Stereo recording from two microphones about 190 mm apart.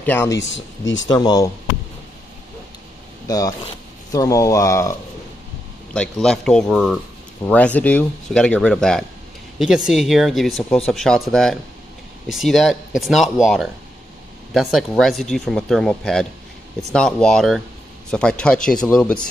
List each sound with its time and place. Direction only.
0.0 s speech: 10° left (ahead or behind)
0.4 s speech: 75° left (ahead or behind)
1.0 s speech: 20° left (ahead or behind)
3.3 s speech: 20° left (ahead or behind)
5.9 s speech: centre (ahead or behind)